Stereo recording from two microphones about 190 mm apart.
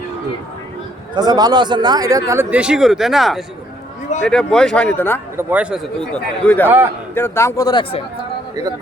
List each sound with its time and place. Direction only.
1.1 s a man's voice: 20° right (ahead or behind); by 5.2 s 10° left (ahead or behind)
5.4 s a man's voice: 10° right (ahead or behind); by 8.0 s 25° left (ahead or behind)